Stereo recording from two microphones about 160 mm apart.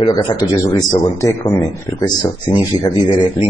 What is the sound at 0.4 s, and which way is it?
Speech, 25° left (ahead or behind).